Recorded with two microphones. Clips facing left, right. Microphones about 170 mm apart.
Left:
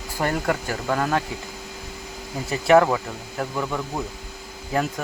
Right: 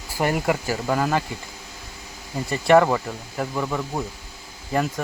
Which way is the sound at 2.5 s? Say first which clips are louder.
Even; centre (ahead or behind).